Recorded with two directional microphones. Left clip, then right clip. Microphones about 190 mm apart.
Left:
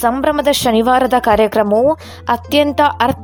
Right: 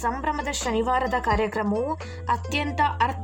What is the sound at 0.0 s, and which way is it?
A woman's voice, 45° left (ahead or behind).